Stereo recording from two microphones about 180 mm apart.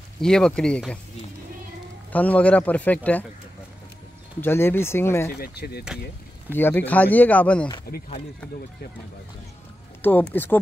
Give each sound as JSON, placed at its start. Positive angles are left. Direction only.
{"t": 0.2, "sound": "speech", "side_deg": 5}
{"t": 2.1, "sound": "speech", "side_deg": 10}
{"t": 4.4, "sound": "speech", "side_deg": 10}
{"t": 5.4, "sound": "speech", "side_deg": 60}
{"t": 6.5, "sound": "speech", "side_deg": 10}
{"t": 7.9, "sound": "speech", "side_deg": 55}
{"t": 10.0, "sound": "speech", "side_deg": 10}